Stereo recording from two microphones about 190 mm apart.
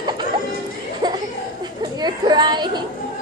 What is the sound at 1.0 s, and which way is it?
Laughter, 20° right (ahead or behind).